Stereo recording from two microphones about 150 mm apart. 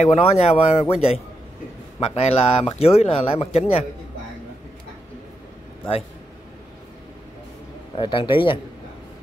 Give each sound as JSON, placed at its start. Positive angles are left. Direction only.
{"t": 0.0, "sound": "speech", "side_deg": 45}
{"t": 7.9, "sound": "speech", "side_deg": 35}